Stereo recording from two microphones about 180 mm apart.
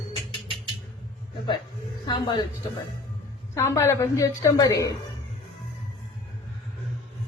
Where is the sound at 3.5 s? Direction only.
15° left (ahead or behind).